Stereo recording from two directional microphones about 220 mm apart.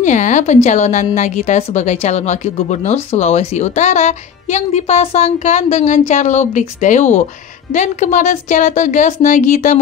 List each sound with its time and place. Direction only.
0.0 s a woman's voice: 35° left (ahead or behind)